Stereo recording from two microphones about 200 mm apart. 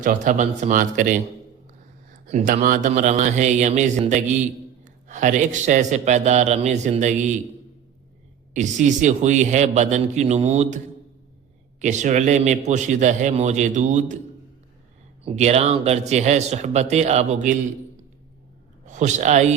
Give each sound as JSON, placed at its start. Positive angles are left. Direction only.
{"t": 0.0, "sound": "a man's voice", "side_deg": -40}
{"t": 2.3, "sound": "a man's voice", "side_deg": -35}
{"t": 8.5, "sound": "a man's voice", "side_deg": -35}
{"t": 11.8, "sound": "a man's voice", "side_deg": -35}
{"t": 15.2, "sound": "a man's voice", "side_deg": -30}
{"t": 18.9, "sound": "a man's voice", "side_deg": -35}